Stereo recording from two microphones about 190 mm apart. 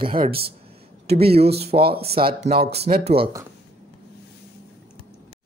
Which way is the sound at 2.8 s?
30° right (ahead or behind).